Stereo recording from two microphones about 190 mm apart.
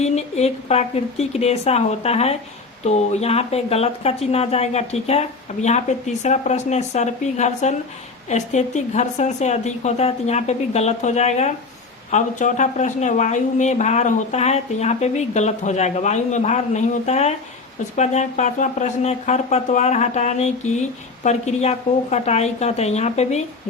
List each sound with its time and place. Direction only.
0.0 s speech: 35° left (ahead or behind)